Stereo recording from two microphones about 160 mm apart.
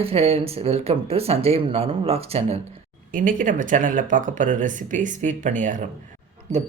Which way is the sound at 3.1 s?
60° right (ahead or behind).